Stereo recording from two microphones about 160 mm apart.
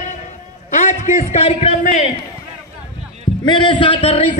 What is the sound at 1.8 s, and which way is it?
Speech, 50° left (ahead or behind).